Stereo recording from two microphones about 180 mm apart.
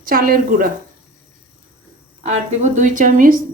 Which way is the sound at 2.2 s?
40° right (ahead or behind).